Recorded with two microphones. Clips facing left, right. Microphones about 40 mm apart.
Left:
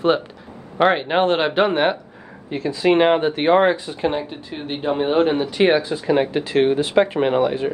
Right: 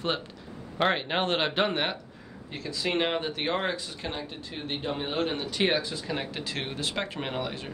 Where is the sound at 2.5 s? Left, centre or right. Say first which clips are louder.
Left 12 dB; left.